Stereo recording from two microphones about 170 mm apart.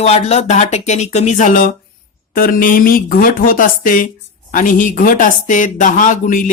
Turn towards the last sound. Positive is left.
turn(degrees=50)  # may be behind; listen again after turning